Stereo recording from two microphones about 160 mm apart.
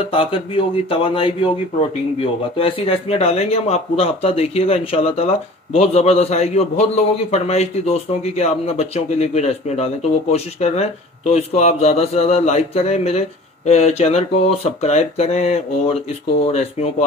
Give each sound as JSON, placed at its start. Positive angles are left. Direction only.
{"t": 0.0, "sound": "speech", "side_deg": 35}
{"t": 2.5, "sound": "speech", "side_deg": 35}